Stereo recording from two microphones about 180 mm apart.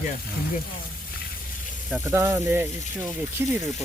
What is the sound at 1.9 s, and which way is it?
Speech, 15° right (ahead or behind).